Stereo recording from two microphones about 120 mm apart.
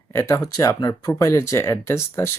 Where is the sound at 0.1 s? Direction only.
20° left (ahead or behind).